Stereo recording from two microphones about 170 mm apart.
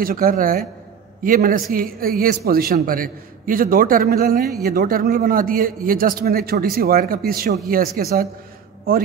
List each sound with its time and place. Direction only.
0.0 s a man's voice: 55° right (ahead or behind)